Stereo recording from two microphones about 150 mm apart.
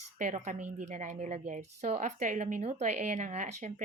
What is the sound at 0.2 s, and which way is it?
A woman's voice, 55° right (ahead or behind).